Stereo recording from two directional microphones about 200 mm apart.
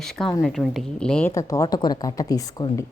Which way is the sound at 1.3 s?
15° left (ahead or behind).